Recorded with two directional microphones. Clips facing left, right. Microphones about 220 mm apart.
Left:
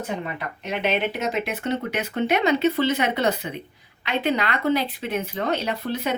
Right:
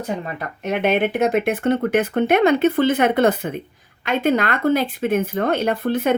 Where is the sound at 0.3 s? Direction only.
50° right (ahead or behind).